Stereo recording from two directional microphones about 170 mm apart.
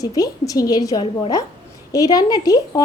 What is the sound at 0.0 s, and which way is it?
Speech, 20° left (ahead or behind).